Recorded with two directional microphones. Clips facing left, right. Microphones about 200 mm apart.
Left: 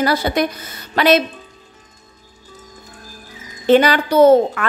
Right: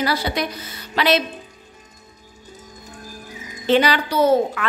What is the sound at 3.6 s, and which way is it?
A woman's voice, 50° left (ahead or behind).